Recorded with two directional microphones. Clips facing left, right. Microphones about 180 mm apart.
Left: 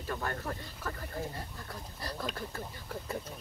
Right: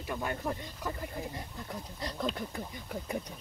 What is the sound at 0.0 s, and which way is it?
Speech, 15° right (ahead or behind).